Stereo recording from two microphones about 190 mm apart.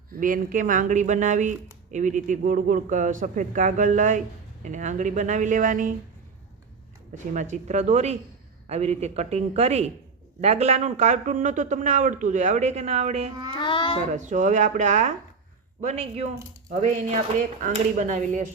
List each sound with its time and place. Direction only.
0.2 s speech: 45° right (ahead or behind)
7.1 s speech: 40° right (ahead or behind)
13.5 s a child's voice: 25° left (ahead or behind)
14.1 s speech: 40° right (ahead or behind)